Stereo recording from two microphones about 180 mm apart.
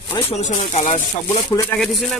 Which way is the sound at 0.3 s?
40° left (ahead or behind).